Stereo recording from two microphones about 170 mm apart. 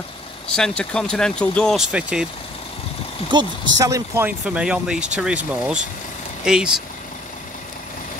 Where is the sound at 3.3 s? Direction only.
25° right (ahead or behind); by 5.1 s 5° right (ahead or behind).